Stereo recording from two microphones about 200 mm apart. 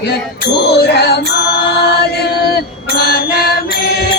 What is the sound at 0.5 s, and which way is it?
Music, 55° left (ahead or behind).